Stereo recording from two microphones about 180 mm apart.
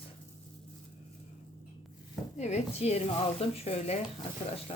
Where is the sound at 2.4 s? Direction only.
40° left (ahead or behind).